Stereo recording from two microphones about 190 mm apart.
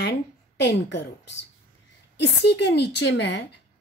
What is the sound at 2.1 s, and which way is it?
A woman's voice, 65° left (ahead or behind).